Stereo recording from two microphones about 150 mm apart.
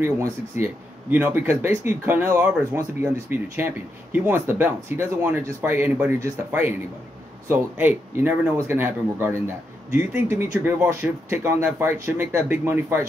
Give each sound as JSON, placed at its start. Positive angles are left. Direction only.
{"t": 0.0, "sound": "speech", "side_deg": -15}